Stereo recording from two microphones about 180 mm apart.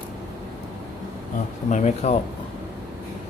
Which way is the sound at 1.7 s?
40° left (ahead or behind).